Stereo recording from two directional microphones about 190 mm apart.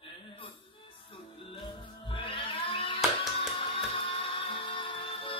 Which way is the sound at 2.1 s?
25° left (ahead or behind).